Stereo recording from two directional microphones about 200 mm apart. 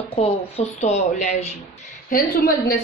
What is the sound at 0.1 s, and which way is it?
Speech, 30° left (ahead or behind).